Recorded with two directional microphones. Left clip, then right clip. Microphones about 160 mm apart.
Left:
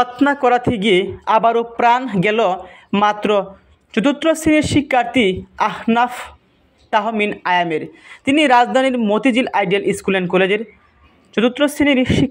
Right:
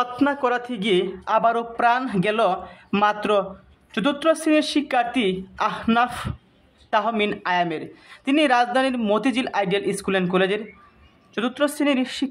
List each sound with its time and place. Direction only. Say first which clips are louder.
0.3 s a man's voice: left 8 dB; 20° left (ahead or behind)